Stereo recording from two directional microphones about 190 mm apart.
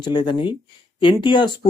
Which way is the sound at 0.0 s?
25° left (ahead or behind).